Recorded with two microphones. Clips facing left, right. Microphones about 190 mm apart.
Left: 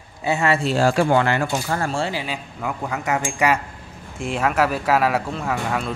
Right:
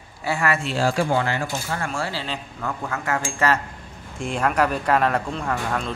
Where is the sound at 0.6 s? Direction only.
40° left (ahead or behind).